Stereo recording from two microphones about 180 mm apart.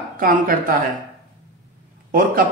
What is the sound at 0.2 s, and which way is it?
Speech, 50° right (ahead or behind).